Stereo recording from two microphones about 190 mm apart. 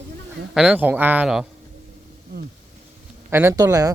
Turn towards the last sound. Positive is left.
turn(degrees=-20)  # may be behind; listen again after turning